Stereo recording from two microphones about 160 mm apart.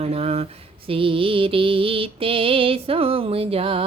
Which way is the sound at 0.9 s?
35° right (ahead or behind).